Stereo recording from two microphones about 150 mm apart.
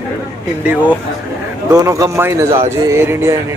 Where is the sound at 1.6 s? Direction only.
20° right (ahead or behind).